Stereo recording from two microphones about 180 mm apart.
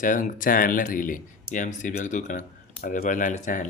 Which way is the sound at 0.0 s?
45° left (ahead or behind).